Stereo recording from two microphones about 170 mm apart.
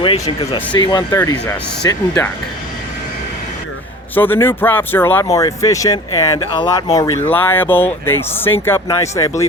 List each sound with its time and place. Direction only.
0.0 s speech: 30° left (ahead or behind)
4.1 s speech: 10° left (ahead or behind)